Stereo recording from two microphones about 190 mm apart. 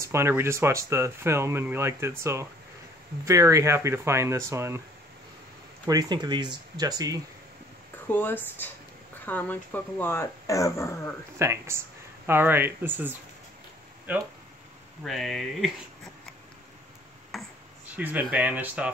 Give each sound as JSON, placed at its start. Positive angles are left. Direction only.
{"t": 0.0, "sound": "speech", "side_deg": -15}
{"t": 5.9, "sound": "speech", "side_deg": -20}
{"t": 8.1, "sound": "speech", "side_deg": 10}
{"t": 11.3, "sound": "speech", "side_deg": -15}
{"t": 17.3, "sound": "a sound", "side_deg": -5}